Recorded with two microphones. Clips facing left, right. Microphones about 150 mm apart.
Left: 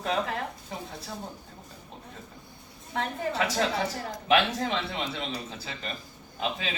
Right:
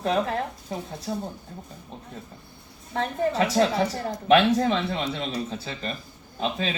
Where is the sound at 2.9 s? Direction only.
35° right (ahead or behind).